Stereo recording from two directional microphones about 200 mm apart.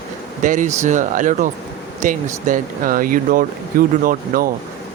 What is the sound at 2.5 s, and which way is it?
Speech, 45° right (ahead or behind).